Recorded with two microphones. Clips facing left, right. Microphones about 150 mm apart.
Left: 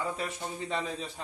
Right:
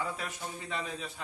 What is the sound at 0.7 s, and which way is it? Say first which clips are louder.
Speech: left 3 dB; 30° left (ahead or behind).